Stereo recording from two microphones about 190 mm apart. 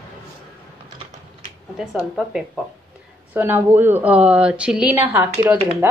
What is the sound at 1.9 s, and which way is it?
A woman's voice, 5° right (ahead or behind).